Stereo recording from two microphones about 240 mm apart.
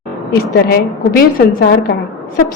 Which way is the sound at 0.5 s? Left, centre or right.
Left.